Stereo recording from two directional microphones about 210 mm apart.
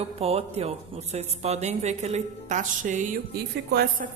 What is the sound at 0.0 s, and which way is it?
A woman's voice, 30° right (ahead or behind).